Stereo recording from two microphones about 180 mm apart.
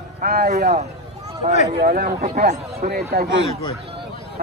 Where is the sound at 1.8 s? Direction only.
50° right (ahead or behind).